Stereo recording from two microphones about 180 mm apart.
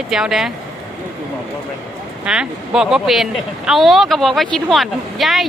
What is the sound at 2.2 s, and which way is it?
Speech, 5° right (ahead or behind).